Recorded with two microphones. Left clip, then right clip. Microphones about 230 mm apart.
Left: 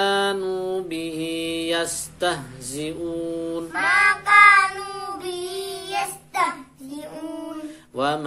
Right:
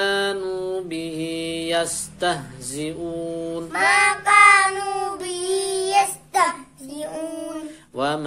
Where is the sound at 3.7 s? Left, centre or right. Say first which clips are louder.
Right 1 dB; right.